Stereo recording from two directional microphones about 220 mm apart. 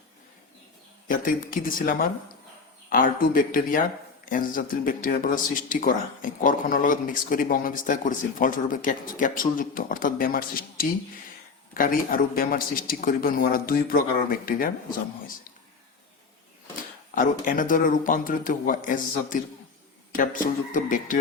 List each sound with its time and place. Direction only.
1.0 s speech: 40° left (ahead or behind)
17.2 s speech: 35° left (ahead or behind)